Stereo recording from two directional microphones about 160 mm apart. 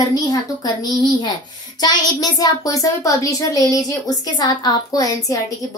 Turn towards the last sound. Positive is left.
turn(degrees=20)  # may be behind; listen again after turning